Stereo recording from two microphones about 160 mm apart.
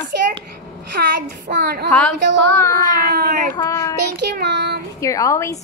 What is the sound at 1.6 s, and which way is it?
Speech, 75° right (ahead or behind).